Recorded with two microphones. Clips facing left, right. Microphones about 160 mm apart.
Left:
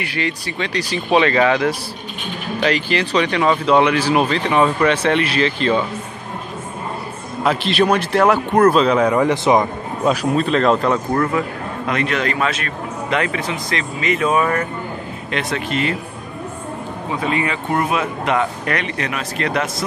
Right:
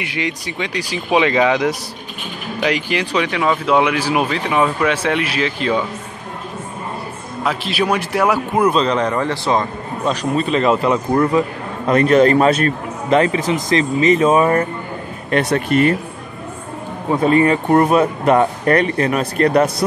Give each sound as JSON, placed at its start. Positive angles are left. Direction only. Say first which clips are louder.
{"t": 0.0, "sound": "speech", "louder": "even", "side_deg": -15}
{"t": 7.4, "sound": "a man's voice", "louder": "left 3 dB", "side_deg": -5}
{"t": 10.0, "sound": "a man's voice", "louder": "left 2 dB", "side_deg": 0}
{"t": 11.4, "sound": "a man's voice", "louder": "right 4 dB", "side_deg": -25}
{"t": 11.9, "sound": "a man's voice", "louder": "right 10 dB", "side_deg": -40}
{"t": 15.3, "sound": "speech", "louder": "right 7 dB", "side_deg": -50}
{"t": 17.1, "sound": "a man's voice", "louder": "right 8 dB", "side_deg": -40}